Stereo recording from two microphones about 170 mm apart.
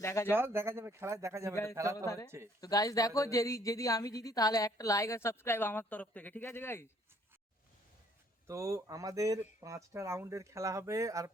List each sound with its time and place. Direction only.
0.0 s speech: 15° left (ahead or behind)
0.3 s speech: 15° right (ahead or behind)
2.6 s a woman's voice: 20° left (ahead or behind)
8.4 s speech: 20° right (ahead or behind)